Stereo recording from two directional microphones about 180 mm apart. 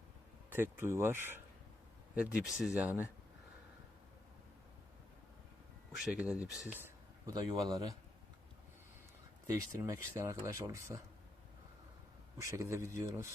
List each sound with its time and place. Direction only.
0.5 s speech: 15° right (ahead or behind)
2.4 s speech: centre (ahead or behind)
6.1 s speech: 5° right (ahead or behind)
7.3 s speech: 25° right (ahead or behind)
9.5 s speech: 20° right (ahead or behind)
12.4 s speech: 15° right (ahead or behind)